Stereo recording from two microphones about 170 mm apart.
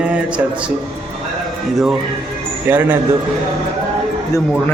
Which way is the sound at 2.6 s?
15° right (ahead or behind).